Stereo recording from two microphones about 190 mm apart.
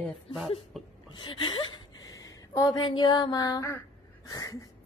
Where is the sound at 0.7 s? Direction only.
Centre (ahead or behind).